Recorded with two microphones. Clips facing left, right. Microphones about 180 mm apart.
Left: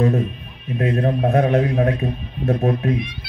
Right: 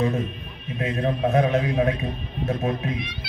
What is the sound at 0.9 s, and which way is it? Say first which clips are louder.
Speech: left 2 dB; 50° left (ahead or behind).